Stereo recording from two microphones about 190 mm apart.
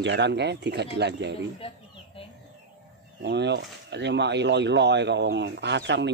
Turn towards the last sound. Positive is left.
turn(degrees=-65)  # may be behind; listen again after turning